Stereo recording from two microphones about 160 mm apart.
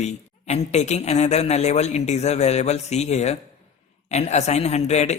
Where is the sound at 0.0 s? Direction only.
45° left (ahead or behind).